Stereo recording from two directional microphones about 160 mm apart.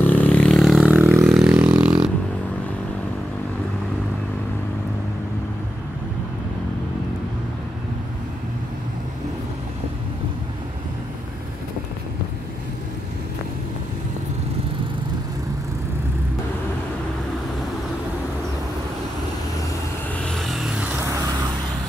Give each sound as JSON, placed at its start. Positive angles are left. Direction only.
{"t": 0.0, "sound": "vehicle", "side_deg": 10}
{"t": 0.8, "sound": "a sound", "side_deg": -5}
{"t": 20.2, "sound": "vehicle", "side_deg": 0}
{"t": 21.0, "sound": "vehicle", "side_deg": -20}